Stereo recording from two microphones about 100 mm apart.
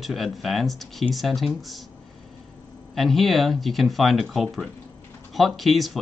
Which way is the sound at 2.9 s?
Centre (ahead or behind).